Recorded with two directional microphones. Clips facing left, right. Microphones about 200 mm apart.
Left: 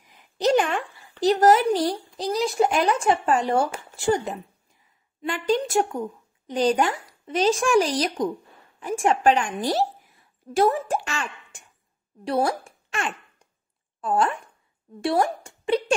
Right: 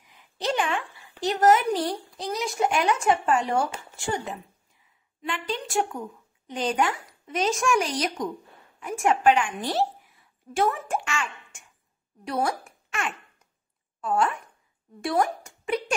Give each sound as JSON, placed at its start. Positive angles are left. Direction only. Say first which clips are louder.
{"t": 0.0, "sound": "a sound", "louder": "left 7 dB", "side_deg": 40}
{"t": 1.2, "sound": "a woman's voice", "louder": "left 3 dB", "side_deg": 35}
{"t": 5.2, "sound": "a woman's voice", "louder": "left 8 dB", "side_deg": 40}